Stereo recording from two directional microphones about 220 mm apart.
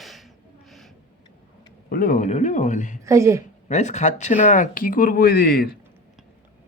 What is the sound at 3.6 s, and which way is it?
Speech, 30° left (ahead or behind).